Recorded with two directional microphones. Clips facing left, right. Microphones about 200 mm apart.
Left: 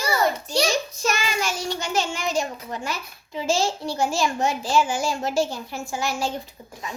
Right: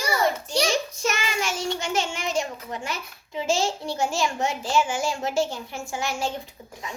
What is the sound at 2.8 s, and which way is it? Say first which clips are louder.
A child's voice: left 2 dB; 20° right (ahead or behind).